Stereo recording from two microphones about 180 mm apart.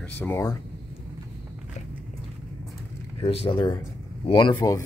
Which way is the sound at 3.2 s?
30° left (ahead or behind).